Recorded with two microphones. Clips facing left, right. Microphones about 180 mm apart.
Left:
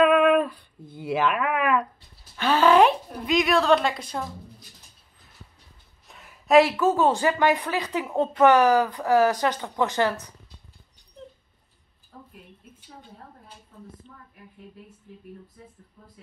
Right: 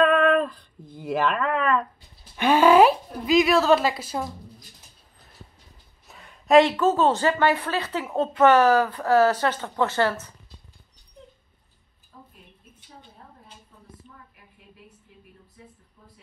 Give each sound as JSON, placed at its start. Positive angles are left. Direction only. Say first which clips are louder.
{"t": 0.0, "sound": "a sound", "louder": "left 1 dB", "side_deg": 5}
{"t": 2.3, "sound": "speech", "louder": "right 2 dB", "side_deg": -10}
{"t": 6.0, "sound": "a woman's voice", "louder": "right 1 dB", "side_deg": 0}